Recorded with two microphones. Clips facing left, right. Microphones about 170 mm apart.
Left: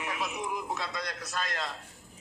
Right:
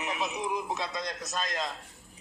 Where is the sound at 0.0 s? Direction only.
20° right (ahead or behind).